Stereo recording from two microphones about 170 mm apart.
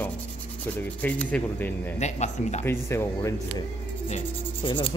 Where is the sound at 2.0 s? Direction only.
45° left (ahead or behind).